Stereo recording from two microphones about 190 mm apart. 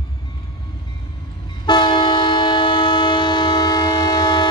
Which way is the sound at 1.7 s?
25° left (ahead or behind).